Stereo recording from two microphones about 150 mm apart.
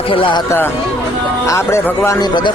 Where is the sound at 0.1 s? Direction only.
35° left (ahead or behind).